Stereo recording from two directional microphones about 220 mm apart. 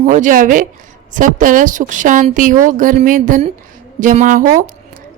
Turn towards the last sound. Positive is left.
turn(degrees=-35)  # may be behind; listen again after turning